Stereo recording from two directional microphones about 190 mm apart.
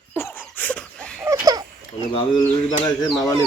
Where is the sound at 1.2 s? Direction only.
15° right (ahead or behind).